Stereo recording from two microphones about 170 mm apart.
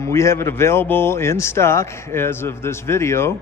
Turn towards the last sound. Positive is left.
turn(degrees=15)  # may be behind; listen again after turning